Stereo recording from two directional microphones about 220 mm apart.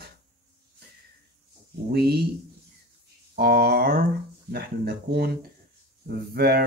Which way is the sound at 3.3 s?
45° right (ahead or behind).